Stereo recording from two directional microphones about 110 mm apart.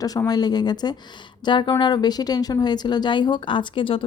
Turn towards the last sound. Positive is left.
turn(degrees=50)  # may be behind; listen again after turning